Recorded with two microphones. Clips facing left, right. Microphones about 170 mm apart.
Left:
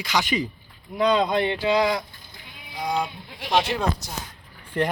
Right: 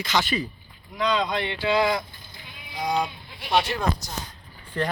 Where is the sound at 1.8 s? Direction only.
15° left (ahead or behind).